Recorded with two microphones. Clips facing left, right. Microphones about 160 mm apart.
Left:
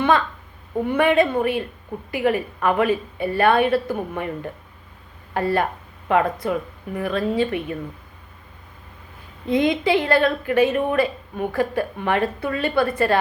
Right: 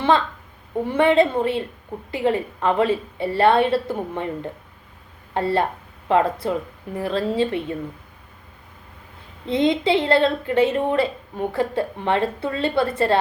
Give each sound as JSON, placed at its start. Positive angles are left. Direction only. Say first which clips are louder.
{"t": 0.9, "sound": "a woman's voice", "louder": "right 1 dB", "side_deg": -25}
{"t": 9.5, "sound": "a woman's voice", "louder": "even", "side_deg": -25}